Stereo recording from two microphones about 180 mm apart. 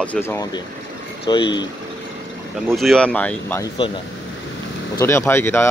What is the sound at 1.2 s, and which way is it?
Speech, 25° left (ahead or behind).